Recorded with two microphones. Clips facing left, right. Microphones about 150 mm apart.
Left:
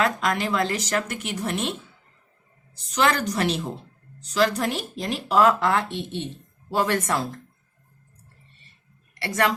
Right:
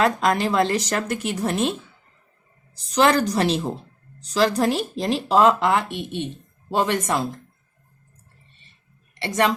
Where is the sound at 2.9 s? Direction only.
35° right (ahead or behind); by 7.3 s 15° right (ahead or behind).